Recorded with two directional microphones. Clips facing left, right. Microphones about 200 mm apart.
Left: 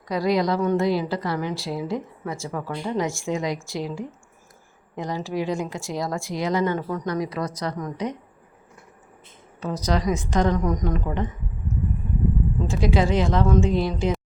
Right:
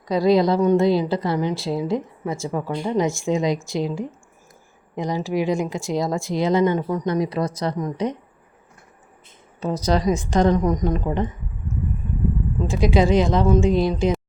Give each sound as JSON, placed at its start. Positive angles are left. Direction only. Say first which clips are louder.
{"t": 0.1, "sound": "a woman's voice", "louder": "right 5 dB", "side_deg": -25}
{"t": 9.6, "sound": "a woman's voice", "louder": "right 4 dB", "side_deg": -25}
{"t": 12.6, "sound": "speech", "louder": "right 4 dB", "side_deg": -15}